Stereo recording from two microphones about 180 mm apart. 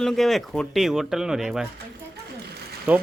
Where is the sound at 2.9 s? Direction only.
10° right (ahead or behind).